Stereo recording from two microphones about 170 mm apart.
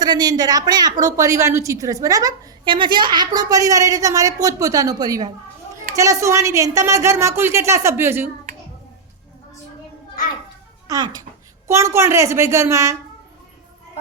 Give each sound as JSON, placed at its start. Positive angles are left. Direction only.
{"t": 0.0, "sound": "a woman's voice", "side_deg": -25}
{"t": 10.8, "sound": "a woman's voice", "side_deg": -25}